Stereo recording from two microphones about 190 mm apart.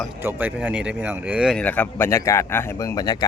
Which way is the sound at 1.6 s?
10° left (ahead or behind).